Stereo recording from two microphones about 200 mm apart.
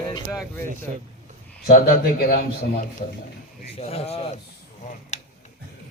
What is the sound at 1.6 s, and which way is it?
Speech, 50° left (ahead or behind).